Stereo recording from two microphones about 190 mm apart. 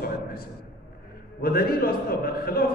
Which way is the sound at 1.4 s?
50° left (ahead or behind).